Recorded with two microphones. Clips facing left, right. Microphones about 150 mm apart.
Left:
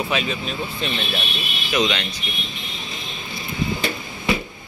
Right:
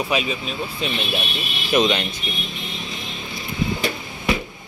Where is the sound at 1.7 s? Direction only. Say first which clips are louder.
Right 3 dB; 25° right (ahead or behind).